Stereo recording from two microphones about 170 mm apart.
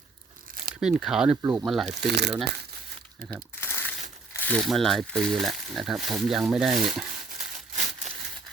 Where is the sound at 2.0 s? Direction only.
80° right.